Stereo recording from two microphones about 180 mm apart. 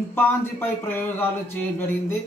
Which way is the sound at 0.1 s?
10° left (ahead or behind).